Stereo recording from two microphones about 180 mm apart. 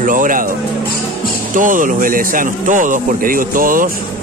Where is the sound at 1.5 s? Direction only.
45° right (ahead or behind).